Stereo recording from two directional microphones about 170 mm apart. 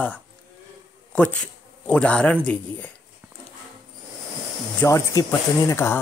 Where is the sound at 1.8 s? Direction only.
5° left (ahead or behind).